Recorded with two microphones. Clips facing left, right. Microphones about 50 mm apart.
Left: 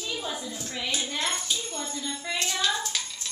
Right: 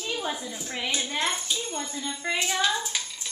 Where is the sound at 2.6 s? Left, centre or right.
Centre.